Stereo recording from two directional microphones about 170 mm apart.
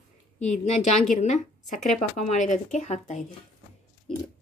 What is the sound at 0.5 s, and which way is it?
Speech, 40° left (ahead or behind).